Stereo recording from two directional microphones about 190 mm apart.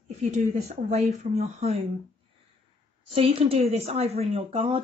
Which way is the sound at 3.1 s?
30° right (ahead or behind).